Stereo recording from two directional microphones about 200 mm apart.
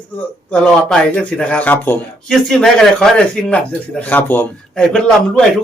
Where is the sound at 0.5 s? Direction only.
5° left (ahead or behind).